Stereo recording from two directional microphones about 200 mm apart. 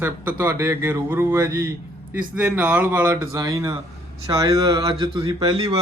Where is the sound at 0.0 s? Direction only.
10° right (ahead or behind).